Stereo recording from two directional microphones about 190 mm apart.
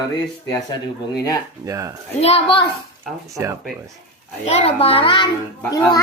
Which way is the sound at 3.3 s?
15° right (ahead or behind).